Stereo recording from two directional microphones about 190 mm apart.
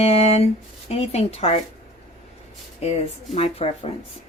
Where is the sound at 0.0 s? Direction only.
35° left (ahead or behind).